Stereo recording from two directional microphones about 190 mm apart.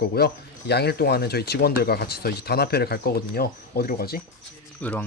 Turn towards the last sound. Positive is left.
turn(degrees=10)  # may be behind; listen again after turning